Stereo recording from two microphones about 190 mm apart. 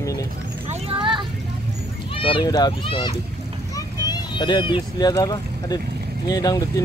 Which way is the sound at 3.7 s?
20° left (ahead or behind).